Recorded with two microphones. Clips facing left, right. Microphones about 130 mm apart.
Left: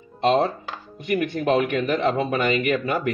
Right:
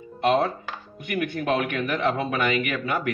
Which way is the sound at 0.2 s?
30° left (ahead or behind).